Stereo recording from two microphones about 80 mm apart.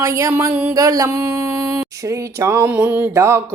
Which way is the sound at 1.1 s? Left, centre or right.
Right.